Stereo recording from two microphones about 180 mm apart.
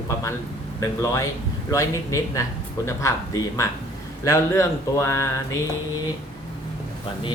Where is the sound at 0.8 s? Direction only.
20° left (ahead or behind).